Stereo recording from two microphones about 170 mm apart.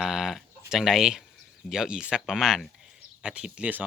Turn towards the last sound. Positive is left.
turn(degrees=-5)  # may be behind; listen again after turning